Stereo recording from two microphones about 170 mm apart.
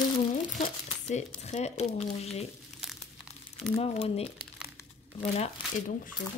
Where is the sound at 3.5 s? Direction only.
35° left (ahead or behind).